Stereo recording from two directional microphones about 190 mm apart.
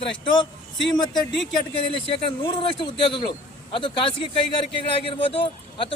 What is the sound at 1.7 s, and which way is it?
Speech, 30° left (ahead or behind).